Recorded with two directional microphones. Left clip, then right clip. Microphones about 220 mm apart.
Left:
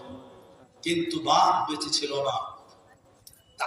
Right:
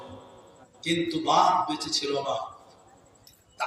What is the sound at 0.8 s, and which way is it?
A man's voice, 50° left (ahead or behind).